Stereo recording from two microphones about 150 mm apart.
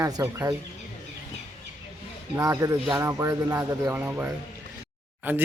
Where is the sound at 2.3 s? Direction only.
20° right (ahead or behind).